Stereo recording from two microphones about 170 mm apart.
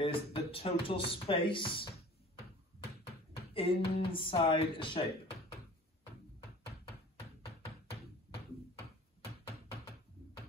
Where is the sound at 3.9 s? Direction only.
30° left (ahead or behind).